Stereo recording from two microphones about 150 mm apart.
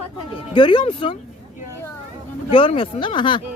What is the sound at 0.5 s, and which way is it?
Speech, 35° left (ahead or behind).